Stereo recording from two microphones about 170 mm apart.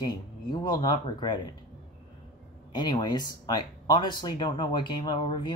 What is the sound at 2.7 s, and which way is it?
Speech, 25° left (ahead or behind).